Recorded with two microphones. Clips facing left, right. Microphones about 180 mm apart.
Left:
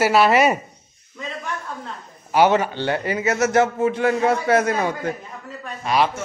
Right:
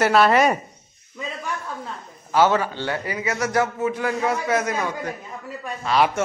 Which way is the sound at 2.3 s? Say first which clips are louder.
Left 2 dB; 20° left (ahead or behind).